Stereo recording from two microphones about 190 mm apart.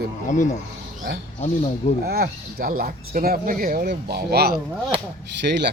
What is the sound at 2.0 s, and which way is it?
Speech, 55° right (ahead or behind).